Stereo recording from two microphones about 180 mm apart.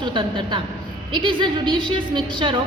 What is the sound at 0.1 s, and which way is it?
A woman's voice, 25° right (ahead or behind).